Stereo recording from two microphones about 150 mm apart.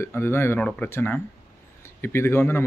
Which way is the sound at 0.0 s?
15° left (ahead or behind).